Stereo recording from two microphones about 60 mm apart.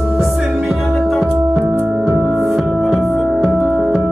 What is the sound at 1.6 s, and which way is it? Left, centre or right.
Music, right.